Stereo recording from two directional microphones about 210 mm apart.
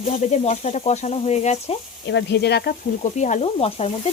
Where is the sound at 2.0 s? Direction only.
55° left (ahead or behind).